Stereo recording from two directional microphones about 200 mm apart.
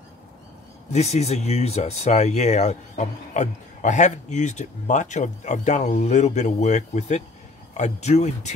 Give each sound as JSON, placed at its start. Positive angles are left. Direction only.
{"t": 0.9, "sound": "speech", "side_deg": 35}